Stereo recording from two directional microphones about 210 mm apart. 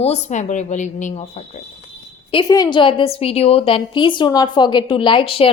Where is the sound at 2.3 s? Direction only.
20° left (ahead or behind).